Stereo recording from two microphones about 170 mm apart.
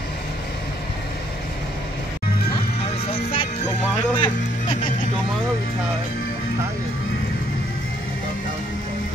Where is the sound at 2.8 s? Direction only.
35° left (ahead or behind).